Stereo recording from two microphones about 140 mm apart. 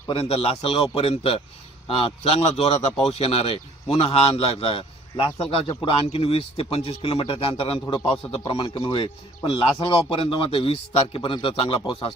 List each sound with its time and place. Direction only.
0.1 s a man's voice: 40° left (ahead or behind)